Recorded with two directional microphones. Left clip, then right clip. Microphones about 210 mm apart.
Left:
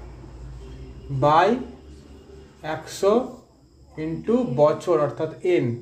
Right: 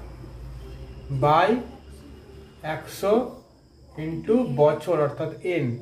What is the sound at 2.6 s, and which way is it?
Speech, 40° left (ahead or behind).